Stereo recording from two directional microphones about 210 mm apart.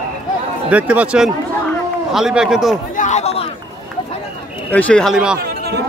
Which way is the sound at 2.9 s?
35° left (ahead or behind).